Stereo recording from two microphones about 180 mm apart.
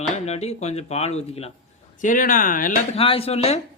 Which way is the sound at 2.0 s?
45° left (ahead or behind).